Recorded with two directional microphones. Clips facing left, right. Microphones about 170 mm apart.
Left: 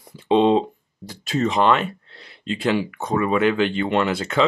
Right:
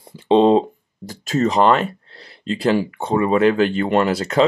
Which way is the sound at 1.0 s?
45° right (ahead or behind).